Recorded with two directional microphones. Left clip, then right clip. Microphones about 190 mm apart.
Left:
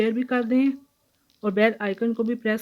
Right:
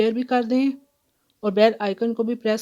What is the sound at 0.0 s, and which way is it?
Speech, 50° right (ahead or behind).